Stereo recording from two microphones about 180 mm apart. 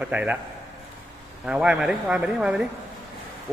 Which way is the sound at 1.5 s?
5° right (ahead or behind).